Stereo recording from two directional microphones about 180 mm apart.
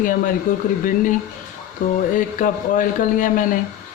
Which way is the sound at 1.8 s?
45° left (ahead or behind).